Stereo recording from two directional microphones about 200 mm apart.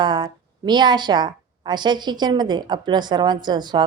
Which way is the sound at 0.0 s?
20° right (ahead or behind).